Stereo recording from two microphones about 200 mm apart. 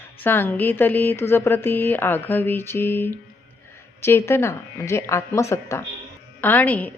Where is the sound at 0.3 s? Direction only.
10° left (ahead or behind).